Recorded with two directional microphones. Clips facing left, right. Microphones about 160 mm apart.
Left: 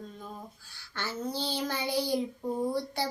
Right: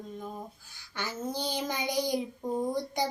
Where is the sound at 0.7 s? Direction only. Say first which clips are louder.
Left 1 dB; 15° right (ahead or behind).